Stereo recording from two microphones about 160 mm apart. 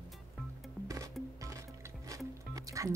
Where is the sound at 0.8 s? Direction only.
20° right (ahead or behind).